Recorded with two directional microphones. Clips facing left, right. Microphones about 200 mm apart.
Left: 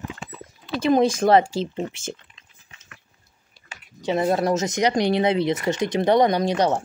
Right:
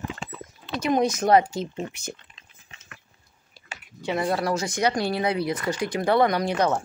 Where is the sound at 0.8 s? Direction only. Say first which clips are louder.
Left 4 dB; 30° left (ahead or behind).